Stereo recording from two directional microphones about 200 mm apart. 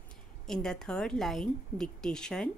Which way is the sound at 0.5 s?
5° left (ahead or behind).